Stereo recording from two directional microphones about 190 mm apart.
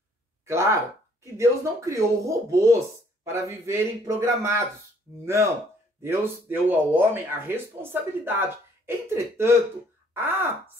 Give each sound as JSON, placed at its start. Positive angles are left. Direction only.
{"t": 0.5, "sound": "speech", "side_deg": -15}